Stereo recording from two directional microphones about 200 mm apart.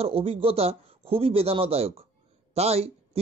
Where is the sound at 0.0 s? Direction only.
30° right (ahead or behind).